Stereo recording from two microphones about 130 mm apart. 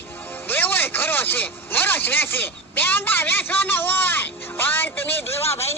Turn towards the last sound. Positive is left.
turn(degrees=15)  # may be behind; listen again after turning